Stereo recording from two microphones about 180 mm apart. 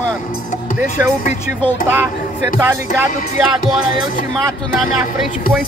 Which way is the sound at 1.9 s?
10° right (ahead or behind).